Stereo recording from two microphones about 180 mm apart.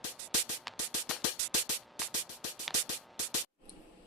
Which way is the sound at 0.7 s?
Centre (ahead or behind).